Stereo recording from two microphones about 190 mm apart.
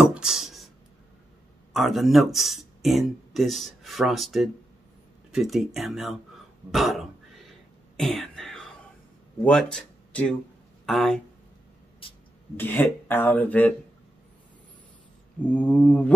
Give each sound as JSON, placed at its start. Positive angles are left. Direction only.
{"t": 0.0, "sound": "a sound", "side_deg": -5}
{"t": 1.7, "sound": "speech", "side_deg": 0}
{"t": 6.7, "sound": "throat clearing", "side_deg": 0}
{"t": 9.4, "sound": "speech", "side_deg": 5}
{"t": 12.0, "sound": "a sound", "side_deg": 30}
{"t": 12.5, "sound": "speech", "side_deg": 10}
{"t": 15.4, "sound": "speech", "side_deg": 5}